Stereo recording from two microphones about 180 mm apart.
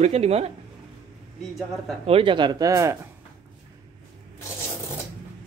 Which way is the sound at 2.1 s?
30° right (ahead or behind).